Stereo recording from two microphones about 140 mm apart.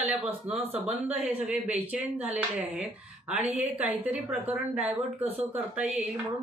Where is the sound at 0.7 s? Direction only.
10° right (ahead or behind).